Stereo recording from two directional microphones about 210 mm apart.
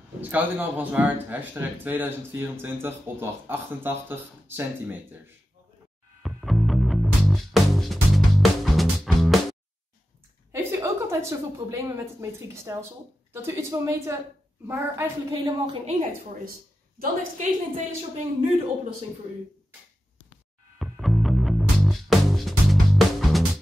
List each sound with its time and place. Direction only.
0.2 s a man's voice: 10° right (ahead or behind)
6.2 s music: centre (ahead or behind)
10.5 s a woman's voice: 15° right (ahead or behind)
17.0 s a woman's voice: 35° right (ahead or behind)
20.8 s music: centre (ahead or behind)